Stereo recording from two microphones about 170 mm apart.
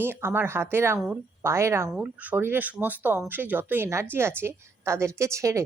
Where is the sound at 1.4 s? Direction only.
15° right (ahead or behind).